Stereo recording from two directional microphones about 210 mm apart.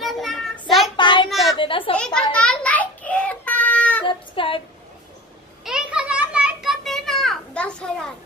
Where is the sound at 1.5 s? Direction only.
25° left (ahead or behind).